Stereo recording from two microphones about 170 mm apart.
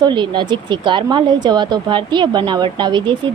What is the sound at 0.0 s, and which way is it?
Speech, 25° right (ahead or behind).